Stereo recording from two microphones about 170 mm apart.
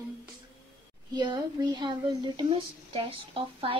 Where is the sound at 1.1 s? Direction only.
25° right (ahead or behind).